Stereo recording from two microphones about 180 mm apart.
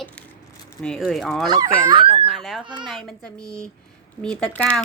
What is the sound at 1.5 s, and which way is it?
Speech, 25° right (ahead or behind).